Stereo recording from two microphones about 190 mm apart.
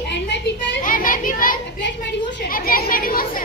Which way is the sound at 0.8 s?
45° left (ahead or behind).